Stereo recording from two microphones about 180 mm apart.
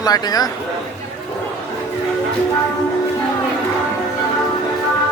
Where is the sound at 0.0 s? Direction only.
20° left (ahead or behind).